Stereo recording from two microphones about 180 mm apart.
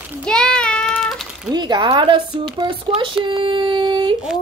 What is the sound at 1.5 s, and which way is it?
Speech, 25° right (ahead or behind).